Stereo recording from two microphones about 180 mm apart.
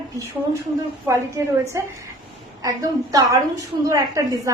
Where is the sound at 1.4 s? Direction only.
15° right (ahead or behind).